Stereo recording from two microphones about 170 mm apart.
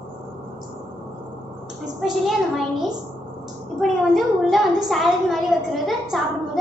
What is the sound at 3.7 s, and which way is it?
A woman's voice, centre (ahead or behind).